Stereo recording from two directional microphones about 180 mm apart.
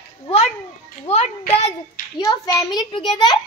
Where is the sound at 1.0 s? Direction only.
35° left (ahead or behind).